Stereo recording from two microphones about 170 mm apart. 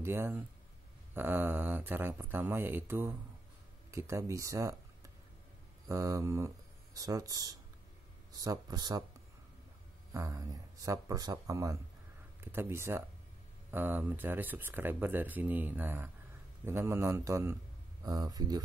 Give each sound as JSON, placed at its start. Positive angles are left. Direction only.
{"t": 0.0, "sound": "a man's voice", "side_deg": -15}
{"t": 10.1, "sound": "a man's voice", "side_deg": -20}